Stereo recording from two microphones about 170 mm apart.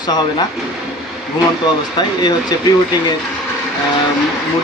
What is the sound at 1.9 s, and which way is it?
Speech, 25° left (ahead or behind).